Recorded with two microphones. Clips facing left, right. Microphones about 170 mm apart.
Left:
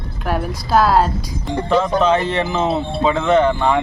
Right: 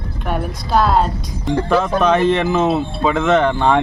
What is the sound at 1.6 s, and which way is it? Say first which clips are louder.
Speech: left 1 dB; 20° left (ahead or behind).